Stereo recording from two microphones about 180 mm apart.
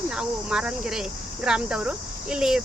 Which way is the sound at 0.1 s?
5° right (ahead or behind).